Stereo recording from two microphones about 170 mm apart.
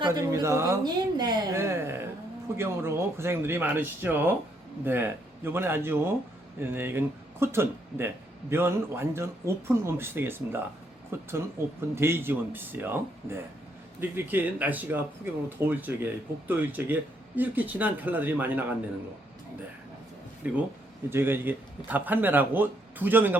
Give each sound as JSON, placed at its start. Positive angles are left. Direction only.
{"t": 0.0, "sound": "speech", "side_deg": -20}
{"t": 20.4, "sound": "speech", "side_deg": -10}